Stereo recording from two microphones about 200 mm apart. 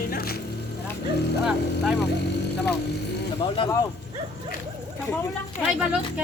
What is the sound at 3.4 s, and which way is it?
Speech, 25° left (ahead or behind).